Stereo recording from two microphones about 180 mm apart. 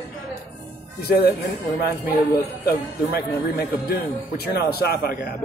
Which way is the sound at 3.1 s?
60° left (ahead or behind).